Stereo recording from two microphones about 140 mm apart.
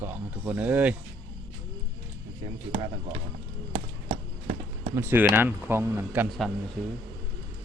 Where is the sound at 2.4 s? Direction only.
30° right (ahead or behind).